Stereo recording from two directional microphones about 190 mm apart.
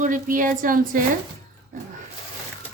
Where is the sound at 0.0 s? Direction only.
45° right (ahead or behind).